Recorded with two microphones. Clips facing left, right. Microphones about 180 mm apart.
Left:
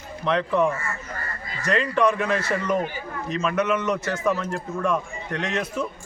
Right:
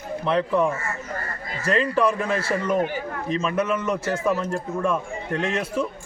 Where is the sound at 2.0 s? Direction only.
Centre (ahead or behind).